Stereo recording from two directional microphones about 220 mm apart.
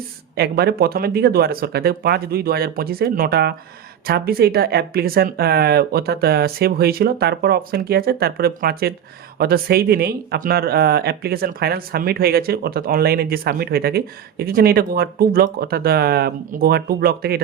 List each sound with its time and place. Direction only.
0.3 s speech: 45° right (ahead or behind)